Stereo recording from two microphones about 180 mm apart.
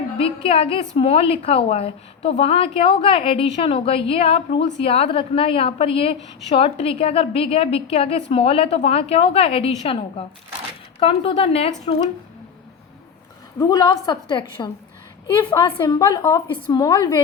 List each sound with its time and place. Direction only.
0.4 s a woman's voice: 30° left (ahead or behind)
13.6 s a woman's voice: 20° left (ahead or behind)
15.4 s a woman's voice: 15° left (ahead or behind)